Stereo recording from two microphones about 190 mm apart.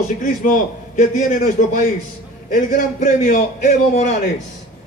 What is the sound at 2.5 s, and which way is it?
A man's voice, 45° left (ahead or behind).